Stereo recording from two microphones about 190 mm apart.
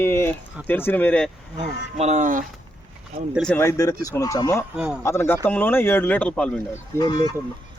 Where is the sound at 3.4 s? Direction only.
10° left (ahead or behind).